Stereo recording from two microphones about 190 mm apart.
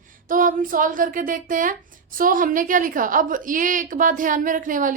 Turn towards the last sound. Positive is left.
turn(degrees=-45)  # may be behind; listen again after turning